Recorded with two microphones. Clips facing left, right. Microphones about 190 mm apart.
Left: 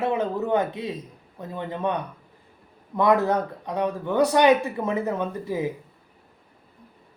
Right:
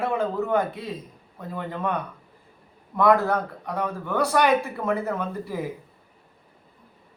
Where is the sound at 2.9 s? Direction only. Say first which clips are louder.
Even; 20° left (ahead or behind).